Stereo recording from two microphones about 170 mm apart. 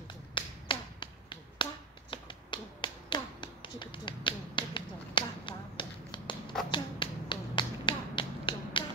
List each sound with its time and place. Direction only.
0.3 s finger snapping: 30° left (ahead or behind)